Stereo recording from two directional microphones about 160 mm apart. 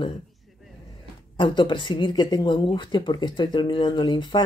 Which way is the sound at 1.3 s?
30° left (ahead or behind).